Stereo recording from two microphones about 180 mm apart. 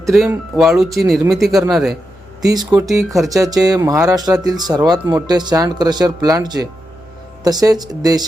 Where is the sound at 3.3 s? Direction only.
20° right (ahead or behind).